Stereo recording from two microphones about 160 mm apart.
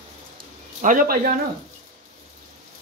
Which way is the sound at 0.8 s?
55° right (ahead or behind).